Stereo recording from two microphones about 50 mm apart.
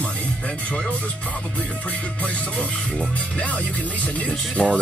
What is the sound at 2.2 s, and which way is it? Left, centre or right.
Music, left.